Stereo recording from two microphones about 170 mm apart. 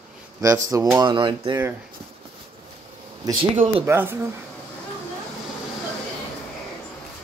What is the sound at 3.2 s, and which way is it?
Speech, 20° right (ahead or behind).